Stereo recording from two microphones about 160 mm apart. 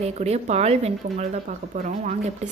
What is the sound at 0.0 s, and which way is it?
A woman's voice, 40° right (ahead or behind).